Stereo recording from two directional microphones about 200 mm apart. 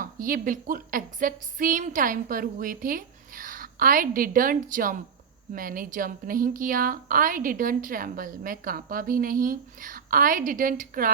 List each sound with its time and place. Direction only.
0.0 s a woman's voice: 45° right (ahead or behind)